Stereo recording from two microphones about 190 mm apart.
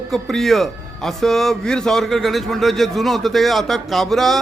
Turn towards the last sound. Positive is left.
turn(degrees=0)  # may be behind; listen again after turning